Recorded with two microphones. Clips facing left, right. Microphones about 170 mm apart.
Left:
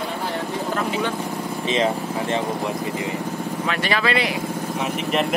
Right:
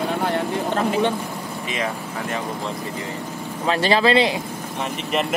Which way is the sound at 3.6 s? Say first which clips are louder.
Right 6 dB; 30° right (ahead or behind).